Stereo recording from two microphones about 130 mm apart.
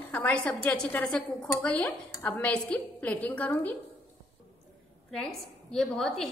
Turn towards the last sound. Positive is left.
turn(degrees=5)  # may be behind; listen again after turning